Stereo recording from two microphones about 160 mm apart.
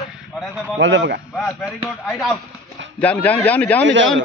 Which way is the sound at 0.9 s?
90° right.